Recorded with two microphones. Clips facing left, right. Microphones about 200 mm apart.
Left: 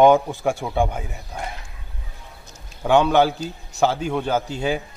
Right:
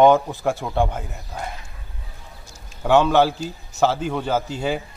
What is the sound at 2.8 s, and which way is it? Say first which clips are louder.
A man's voice: even; 5° right (ahead or behind).